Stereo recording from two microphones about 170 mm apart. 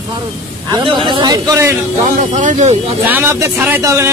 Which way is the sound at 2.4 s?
45° right (ahead or behind).